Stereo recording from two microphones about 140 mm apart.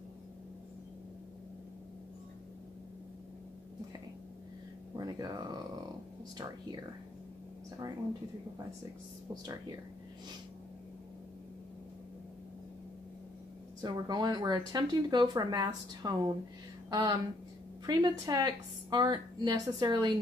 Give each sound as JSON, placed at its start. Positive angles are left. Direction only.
{"t": 4.9, "sound": "speech", "side_deg": -30}
{"t": 9.3, "sound": "speech", "side_deg": -30}
{"t": 13.7, "sound": "speech", "side_deg": -30}